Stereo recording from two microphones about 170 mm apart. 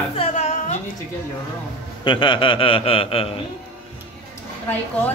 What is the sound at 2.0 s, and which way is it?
A man's voice, 30° left (ahead or behind).